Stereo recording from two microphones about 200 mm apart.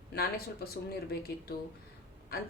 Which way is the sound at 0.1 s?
50° left (ahead or behind).